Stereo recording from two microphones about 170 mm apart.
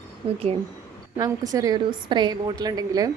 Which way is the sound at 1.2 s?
20° right (ahead or behind).